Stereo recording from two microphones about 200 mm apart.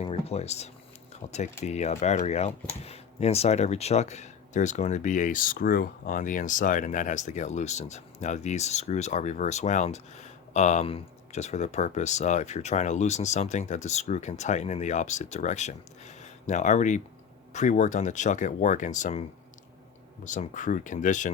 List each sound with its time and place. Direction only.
0.0 s speech: 30° left (ahead or behind)
20.2 s speech: 40° left (ahead or behind)